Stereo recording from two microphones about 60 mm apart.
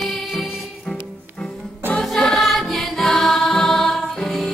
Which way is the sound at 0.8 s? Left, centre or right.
Centre.